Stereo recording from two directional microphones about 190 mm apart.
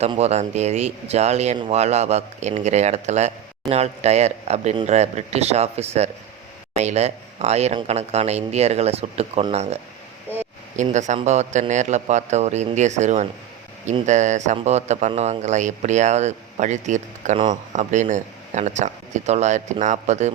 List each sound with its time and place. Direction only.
0.0 s speech: 35° right (ahead or behind)
10.8 s speech: 40° right (ahead or behind)